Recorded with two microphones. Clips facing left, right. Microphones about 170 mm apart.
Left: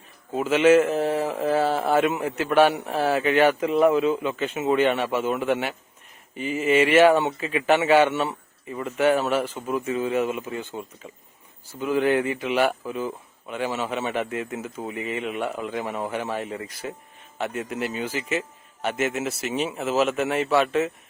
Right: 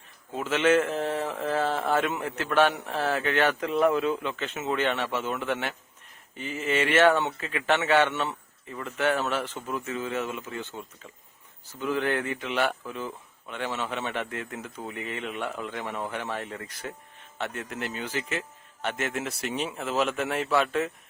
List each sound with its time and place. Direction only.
0.3 s mantra: 10° left (ahead or behind)